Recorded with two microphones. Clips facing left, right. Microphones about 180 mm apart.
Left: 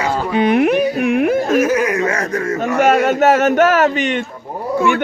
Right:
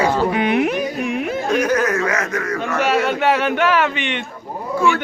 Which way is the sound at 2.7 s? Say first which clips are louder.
Left 6 dB; 50° left (ahead or behind).